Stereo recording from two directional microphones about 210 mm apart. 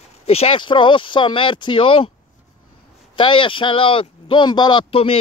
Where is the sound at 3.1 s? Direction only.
25° left (ahead or behind).